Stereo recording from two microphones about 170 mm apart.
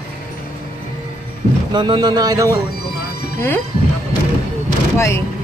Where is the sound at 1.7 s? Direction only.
25° right (ahead or behind).